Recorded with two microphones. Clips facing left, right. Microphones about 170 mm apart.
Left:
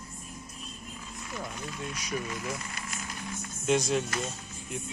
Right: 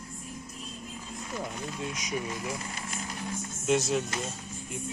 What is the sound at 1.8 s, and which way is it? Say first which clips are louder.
Speech: right 1 dB; 20° right (ahead or behind).